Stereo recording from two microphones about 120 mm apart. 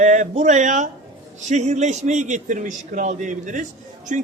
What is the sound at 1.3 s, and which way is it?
A man's voice, 75° right (ahead or behind).